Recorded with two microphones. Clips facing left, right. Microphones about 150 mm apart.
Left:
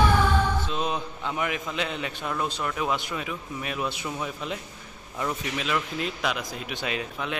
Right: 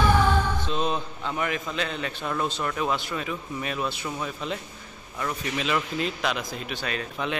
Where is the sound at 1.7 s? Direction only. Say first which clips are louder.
Even; 15° left (ahead or behind).